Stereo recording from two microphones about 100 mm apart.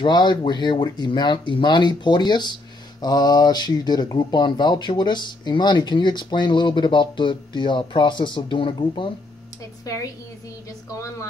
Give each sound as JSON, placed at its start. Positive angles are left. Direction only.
{"t": 0.0, "sound": "speech", "side_deg": 50}
{"t": 9.9, "sound": "a woman's voice", "side_deg": 35}